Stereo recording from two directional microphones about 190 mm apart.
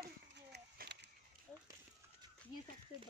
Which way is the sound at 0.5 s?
60° right (ahead or behind).